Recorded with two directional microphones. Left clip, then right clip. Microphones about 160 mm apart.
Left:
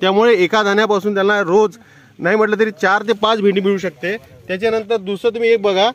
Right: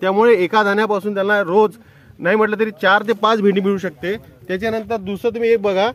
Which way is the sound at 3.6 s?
30° left (ahead or behind).